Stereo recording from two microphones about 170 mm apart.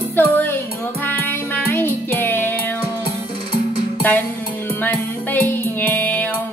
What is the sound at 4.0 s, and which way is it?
Music, 10° left (ahead or behind).